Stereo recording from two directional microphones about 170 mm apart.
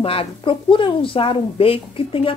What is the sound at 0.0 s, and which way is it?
A woman's voice, 35° left (ahead or behind).